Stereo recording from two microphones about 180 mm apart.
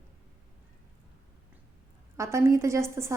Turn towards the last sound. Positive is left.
turn(degrees=-15)  # may be behind; listen again after turning